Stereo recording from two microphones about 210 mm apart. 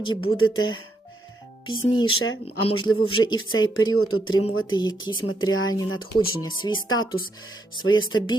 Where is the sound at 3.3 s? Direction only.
70° left (ahead or behind).